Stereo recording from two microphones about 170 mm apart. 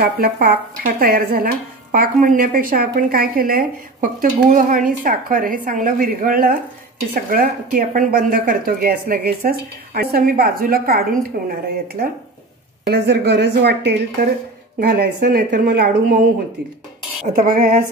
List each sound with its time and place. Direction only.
0.0 s speech: 60° right (ahead or behind)
12.8 s a woman's voice: 80° right
14.8 s speech: 60° right (ahead or behind)
17.3 s speech: 55° right (ahead or behind)